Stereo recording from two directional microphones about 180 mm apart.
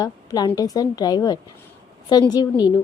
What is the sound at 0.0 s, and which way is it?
A woman's voice, 20° left (ahead or behind).